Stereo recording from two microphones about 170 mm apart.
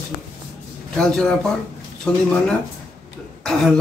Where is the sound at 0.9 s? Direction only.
5° left (ahead or behind).